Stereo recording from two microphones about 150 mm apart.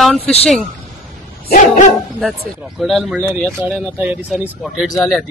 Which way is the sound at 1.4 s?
55° left (ahead or behind).